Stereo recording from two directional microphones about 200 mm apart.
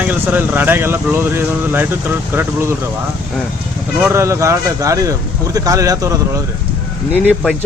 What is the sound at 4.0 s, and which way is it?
Speech, 15° right (ahead or behind).